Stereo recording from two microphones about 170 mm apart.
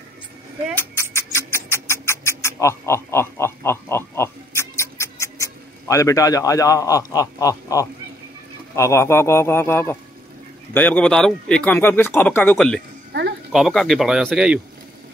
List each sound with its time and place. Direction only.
0.7 s rodents: 15° left (ahead or behind)
8.7 s speech: 15° left (ahead or behind); by 14.6 s 5° right (ahead or behind)